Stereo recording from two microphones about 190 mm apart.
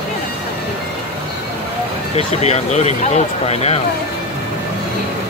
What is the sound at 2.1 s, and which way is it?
Speech, 35° left (ahead or behind).